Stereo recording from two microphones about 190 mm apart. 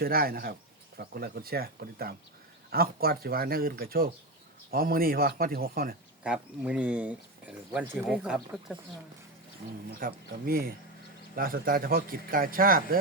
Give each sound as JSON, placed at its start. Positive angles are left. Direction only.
{"t": 0.0, "sound": "a man's voice", "side_deg": -50}
{"t": 6.2, "sound": "speech", "side_deg": -5}
{"t": 10.0, "sound": "a man's voice", "side_deg": -50}